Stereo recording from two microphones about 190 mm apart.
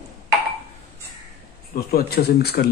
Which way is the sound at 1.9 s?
55° left (ahead or behind).